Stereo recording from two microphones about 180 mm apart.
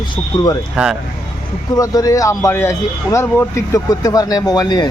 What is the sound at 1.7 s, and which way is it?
Speech, 20° left (ahead or behind).